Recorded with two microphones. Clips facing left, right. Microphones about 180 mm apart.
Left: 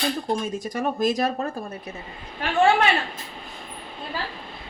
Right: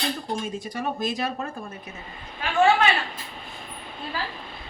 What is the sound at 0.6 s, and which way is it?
Speech, 45° left (ahead or behind).